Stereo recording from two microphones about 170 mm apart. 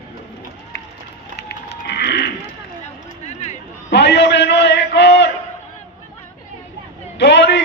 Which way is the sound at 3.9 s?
90° left.